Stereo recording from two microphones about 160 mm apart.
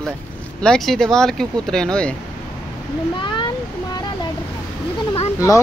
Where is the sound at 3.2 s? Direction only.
30° left (ahead or behind).